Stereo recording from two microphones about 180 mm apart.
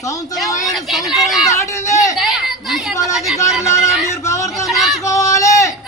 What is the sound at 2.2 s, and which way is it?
Chatter, centre (ahead or behind).